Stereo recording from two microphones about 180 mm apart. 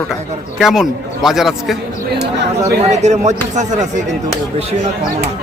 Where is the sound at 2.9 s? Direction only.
40° right (ahead or behind).